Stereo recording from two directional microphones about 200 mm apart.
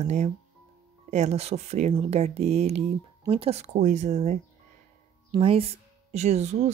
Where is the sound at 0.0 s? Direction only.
35° right (ahead or behind).